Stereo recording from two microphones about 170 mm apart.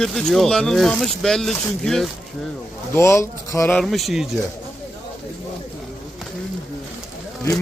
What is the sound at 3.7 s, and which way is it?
Speech, centre (ahead or behind).